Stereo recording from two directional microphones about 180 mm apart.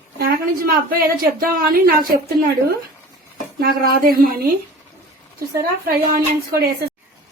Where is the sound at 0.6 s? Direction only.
55° right (ahead or behind).